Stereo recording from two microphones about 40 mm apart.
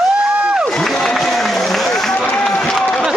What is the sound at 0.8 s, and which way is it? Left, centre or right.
Run, centre.